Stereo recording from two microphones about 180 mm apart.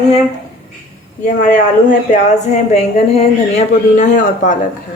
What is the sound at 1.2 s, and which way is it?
A man's voice, 40° left (ahead or behind).